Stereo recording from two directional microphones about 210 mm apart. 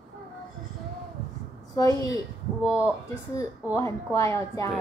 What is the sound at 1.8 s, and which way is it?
Speech, 15° left (ahead or behind).